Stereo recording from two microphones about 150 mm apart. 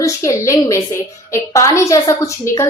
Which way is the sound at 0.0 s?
20° left (ahead or behind).